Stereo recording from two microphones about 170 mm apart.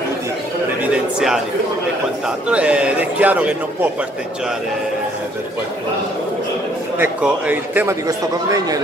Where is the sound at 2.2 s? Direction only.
5° right (ahead or behind).